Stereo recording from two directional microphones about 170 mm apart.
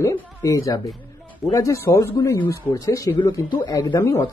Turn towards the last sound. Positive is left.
turn(degrees=15)  # may be behind; listen again after turning